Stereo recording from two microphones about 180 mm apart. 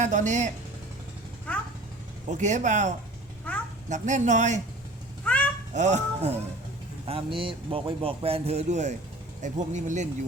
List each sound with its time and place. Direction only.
0.0 s speech: 40° right (ahead or behind)
1.5 s cat: 5° left (ahead or behind)
2.4 s speech: 40° right (ahead or behind)
5.2 s a sound: 5° left (ahead or behind)
5.7 s speech: 40° right (ahead or behind)